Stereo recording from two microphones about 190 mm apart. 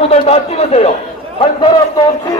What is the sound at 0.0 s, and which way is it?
A man's voice, 30° left (ahead or behind).